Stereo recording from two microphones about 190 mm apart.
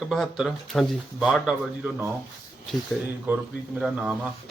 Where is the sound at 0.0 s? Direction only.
Centre (ahead or behind).